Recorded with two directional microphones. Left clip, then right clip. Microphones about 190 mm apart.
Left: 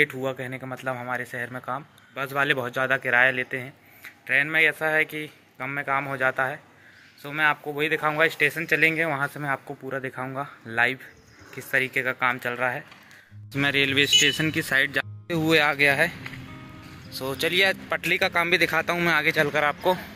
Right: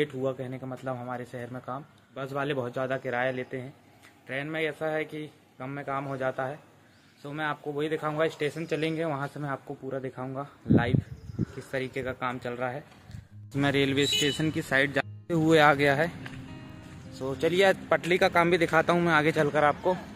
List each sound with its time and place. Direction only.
0.0 s a man's voice: 5° right (ahead or behind)
15.5 s speech: 20° right (ahead or behind)
17.2 s speech: 10° right (ahead or behind)